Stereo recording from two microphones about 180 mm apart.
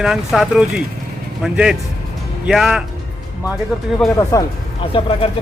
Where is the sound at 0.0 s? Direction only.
Centre (ahead or behind).